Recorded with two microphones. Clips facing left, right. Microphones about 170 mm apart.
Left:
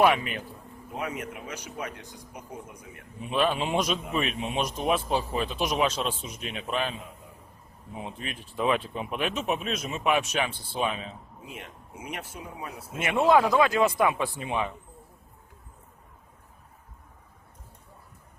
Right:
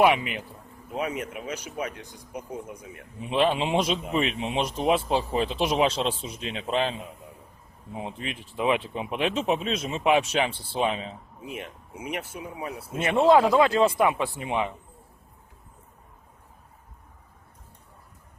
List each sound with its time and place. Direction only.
0.0 s a man's voice: 15° right (ahead or behind)
3.2 s a man's voice: 25° right (ahead or behind)
7.9 s a man's voice: 25° right (ahead or behind)
13.0 s a man's voice: 25° right (ahead or behind)